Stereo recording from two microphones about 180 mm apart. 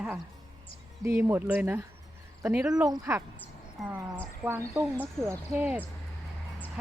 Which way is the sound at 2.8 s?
15° right (ahead or behind).